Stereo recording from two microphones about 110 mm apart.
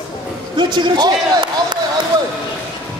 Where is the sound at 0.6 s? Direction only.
40° right (ahead or behind).